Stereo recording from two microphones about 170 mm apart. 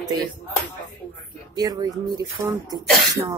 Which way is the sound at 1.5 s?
20° right (ahead or behind).